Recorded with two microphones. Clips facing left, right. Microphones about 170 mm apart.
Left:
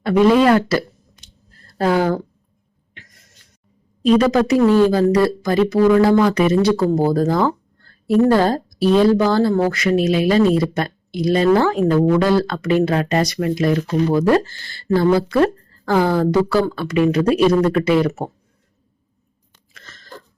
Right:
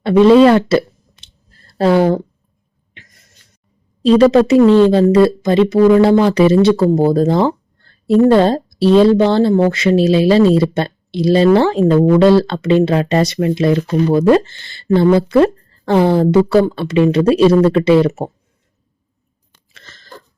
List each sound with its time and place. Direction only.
0.0 s speech: 25° right (ahead or behind)
4.0 s speech: 30° right (ahead or behind)
19.7 s a sound: 25° right (ahead or behind)